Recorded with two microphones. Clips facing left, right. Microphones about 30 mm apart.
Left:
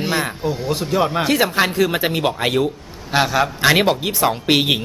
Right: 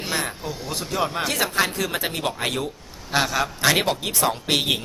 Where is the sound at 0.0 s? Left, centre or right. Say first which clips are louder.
Left 6 dB; centre.